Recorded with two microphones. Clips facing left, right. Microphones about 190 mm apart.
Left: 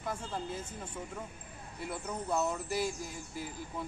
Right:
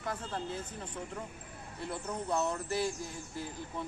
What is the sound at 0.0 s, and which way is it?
Speech, 10° left (ahead or behind).